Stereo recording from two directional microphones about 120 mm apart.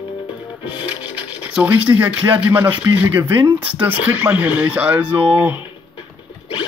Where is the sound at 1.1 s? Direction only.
10° right (ahead or behind).